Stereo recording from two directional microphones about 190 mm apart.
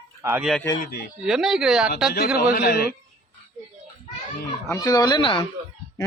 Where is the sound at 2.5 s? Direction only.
55° left (ahead or behind).